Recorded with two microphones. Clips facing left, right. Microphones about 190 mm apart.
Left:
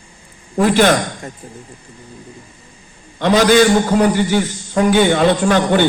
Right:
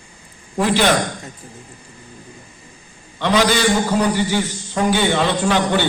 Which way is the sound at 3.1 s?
45° left (ahead or behind).